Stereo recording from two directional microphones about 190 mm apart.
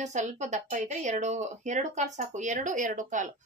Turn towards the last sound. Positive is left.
turn(degrees=-40)  # may be behind; listen again after turning